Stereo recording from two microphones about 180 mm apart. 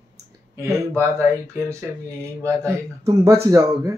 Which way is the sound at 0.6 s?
15° right (ahead or behind).